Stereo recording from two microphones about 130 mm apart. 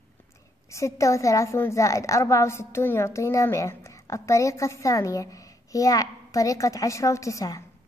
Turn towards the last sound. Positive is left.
turn(degrees=25)  # may be behind; listen again after turning